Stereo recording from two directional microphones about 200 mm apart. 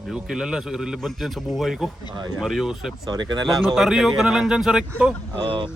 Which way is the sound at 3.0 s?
20° right (ahead or behind).